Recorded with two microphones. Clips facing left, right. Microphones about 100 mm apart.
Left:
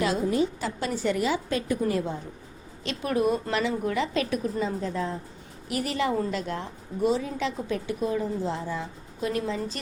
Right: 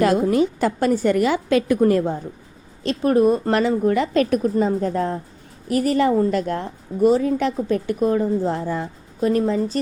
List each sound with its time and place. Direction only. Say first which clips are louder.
0.0 s a woman's voice: right 7 dB; 60° right (ahead or behind)
2.8 s a woman's voice: right 9 dB; 40° right (ahead or behind)